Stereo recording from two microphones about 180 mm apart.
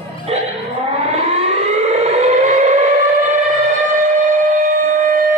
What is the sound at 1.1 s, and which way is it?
Civil defense siren, 35° right (ahead or behind).